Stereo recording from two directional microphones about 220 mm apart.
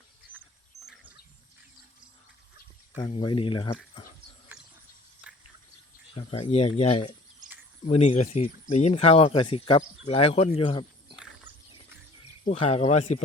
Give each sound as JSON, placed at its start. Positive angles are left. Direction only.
{"t": 3.0, "sound": "speech", "side_deg": 20}
{"t": 6.1, "sound": "speech", "side_deg": 25}
{"t": 11.5, "sound": "music", "side_deg": -10}
{"t": 12.5, "sound": "speech", "side_deg": 30}